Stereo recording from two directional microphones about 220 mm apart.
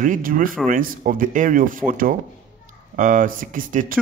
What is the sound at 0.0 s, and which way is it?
Speech, 40° right (ahead or behind).